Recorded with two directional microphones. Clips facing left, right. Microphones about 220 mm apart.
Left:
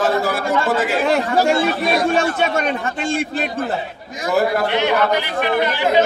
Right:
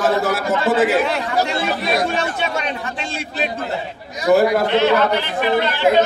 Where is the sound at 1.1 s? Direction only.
50° left (ahead or behind).